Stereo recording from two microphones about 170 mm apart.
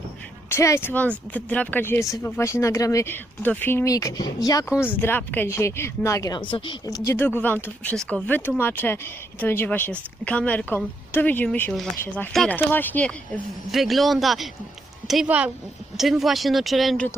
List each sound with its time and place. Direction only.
0.5 s speech: 15° left (ahead or behind); by 17.1 s centre (ahead or behind)